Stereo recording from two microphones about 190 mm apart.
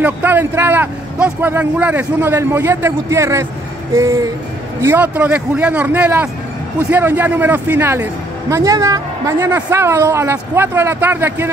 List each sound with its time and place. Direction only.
0.0 s a man's voice: 10° right (ahead or behind)